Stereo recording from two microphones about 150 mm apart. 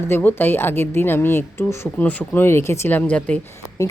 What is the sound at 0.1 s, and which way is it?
A woman's voice, 15° left (ahead or behind).